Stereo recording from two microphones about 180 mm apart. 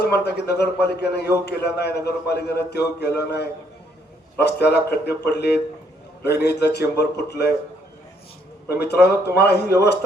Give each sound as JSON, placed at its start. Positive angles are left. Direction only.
{"t": 0.0, "sound": "a man's voice", "side_deg": 65}
{"t": 8.7, "sound": "a man's voice", "side_deg": 65}